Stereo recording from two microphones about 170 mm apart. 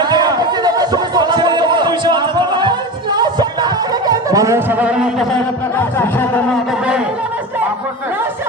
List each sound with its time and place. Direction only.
0.0 s chatter: 25° right (ahead or behind); by 5.0 s 10° right (ahead or behind)
5.7 s music: 15° left (ahead or behind)